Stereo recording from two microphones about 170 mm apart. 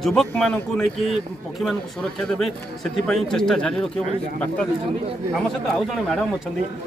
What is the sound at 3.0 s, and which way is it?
Speech, 5° left (ahead or behind).